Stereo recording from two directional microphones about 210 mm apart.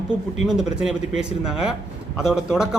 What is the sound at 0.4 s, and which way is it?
Speech, 5° right (ahead or behind).